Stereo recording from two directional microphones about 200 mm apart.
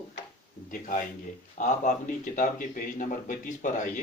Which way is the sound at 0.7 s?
40° left (ahead or behind).